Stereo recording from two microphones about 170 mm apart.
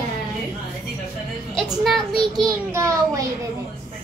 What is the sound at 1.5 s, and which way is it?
Speech, centre (ahead or behind).